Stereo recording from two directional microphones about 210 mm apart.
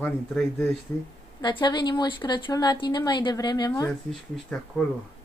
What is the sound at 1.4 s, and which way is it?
A woman's voice, 20° left (ahead or behind).